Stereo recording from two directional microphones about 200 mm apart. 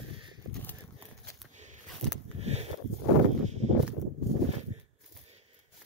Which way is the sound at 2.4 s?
30° right (ahead or behind).